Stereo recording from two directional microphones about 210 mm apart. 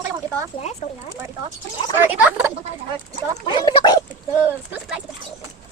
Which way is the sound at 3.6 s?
20° left (ahead or behind).